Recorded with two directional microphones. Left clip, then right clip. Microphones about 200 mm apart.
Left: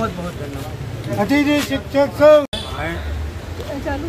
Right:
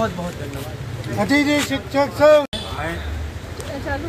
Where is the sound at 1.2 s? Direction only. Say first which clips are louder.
Left 1 dB; 30° right (ahead or behind).